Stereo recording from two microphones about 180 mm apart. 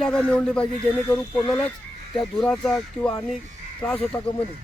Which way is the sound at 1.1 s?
20° left (ahead or behind).